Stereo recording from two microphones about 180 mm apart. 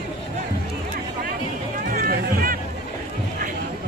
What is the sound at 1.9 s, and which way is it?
Music, 50° right (ahead or behind).